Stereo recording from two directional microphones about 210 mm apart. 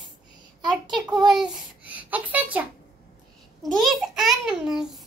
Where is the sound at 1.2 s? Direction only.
Centre (ahead or behind).